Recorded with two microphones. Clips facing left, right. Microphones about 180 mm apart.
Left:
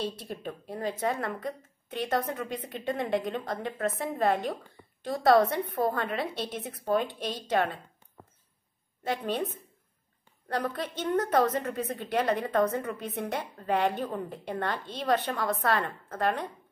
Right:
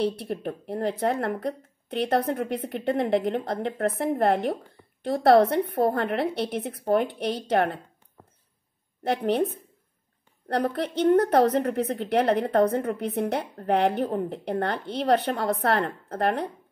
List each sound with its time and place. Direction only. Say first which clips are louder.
0.0 s a woman's voice: right 7 dB; 65° right (ahead or behind)
9.0 s a woman's voice: right 6 dB; 70° right (ahead or behind)
10.5 s a woman's voice: right 6 dB; 60° right (ahead or behind)